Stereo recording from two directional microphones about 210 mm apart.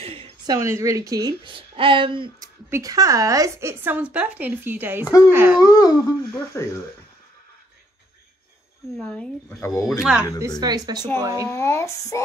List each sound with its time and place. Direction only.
0.0 s a sound: 25° right (ahead or behind)
0.6 s a woman's voice: 15° right (ahead or behind)
5.0 s speech: 15° left (ahead or behind)
5.3 s speech: 10° right (ahead or behind)
5.6 s speech: 15° left (ahead or behind)
8.9 s speech: 5° left (ahead or behind)
9.8 s speech: centre (ahead or behind)
10.6 s a woman's voice: 20° right (ahead or behind)
11.5 s speech: 10° left (ahead or behind)